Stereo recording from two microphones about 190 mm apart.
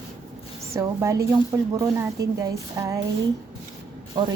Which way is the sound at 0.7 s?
15° right (ahead or behind).